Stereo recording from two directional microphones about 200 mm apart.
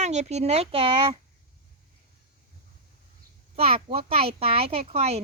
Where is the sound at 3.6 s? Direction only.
30° right (ahead or behind).